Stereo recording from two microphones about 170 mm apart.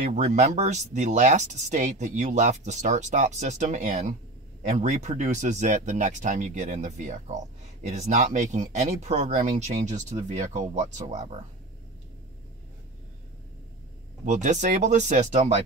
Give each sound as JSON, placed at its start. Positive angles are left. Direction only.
{"t": 0.0, "sound": "speech", "side_deg": -45}
{"t": 14.2, "sound": "speech", "side_deg": -45}